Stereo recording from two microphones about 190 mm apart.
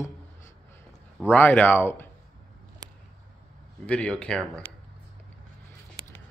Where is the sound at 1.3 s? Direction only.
10° left (ahead or behind).